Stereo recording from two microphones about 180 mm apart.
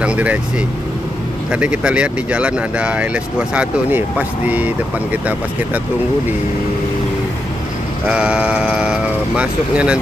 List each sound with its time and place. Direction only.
0.0 s speech: 5° right (ahead or behind)
1.5 s speech: 5° right (ahead or behind)
8.1 s speech: 5° right (ahead or behind)